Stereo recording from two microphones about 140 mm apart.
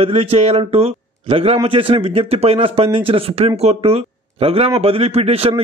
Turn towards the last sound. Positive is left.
turn(degrees=-45)  # may be behind; listen again after turning